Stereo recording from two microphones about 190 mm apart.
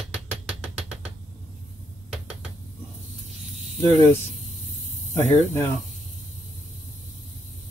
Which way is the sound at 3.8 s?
15° left (ahead or behind).